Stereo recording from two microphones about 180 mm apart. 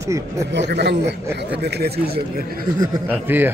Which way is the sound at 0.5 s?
70° right (ahead or behind).